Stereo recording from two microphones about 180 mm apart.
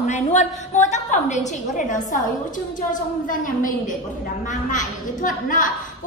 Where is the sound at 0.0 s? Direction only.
40° left (ahead or behind).